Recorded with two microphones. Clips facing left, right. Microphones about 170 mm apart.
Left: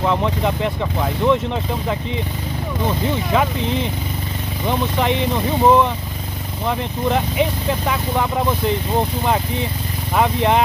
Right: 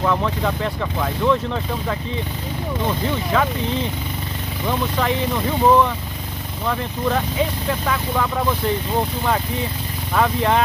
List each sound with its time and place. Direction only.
0.0 s speech: 20° left (ahead or behind)
3.3 s speech: 20° left (ahead or behind)
4.6 s speech: 20° left (ahead or behind)
10.1 s speech: 20° left (ahead or behind)